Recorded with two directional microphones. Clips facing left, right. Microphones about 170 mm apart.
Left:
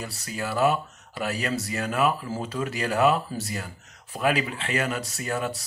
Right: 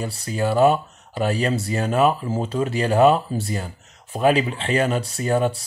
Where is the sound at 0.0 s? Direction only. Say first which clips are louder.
Right 8 dB; 30° right (ahead or behind).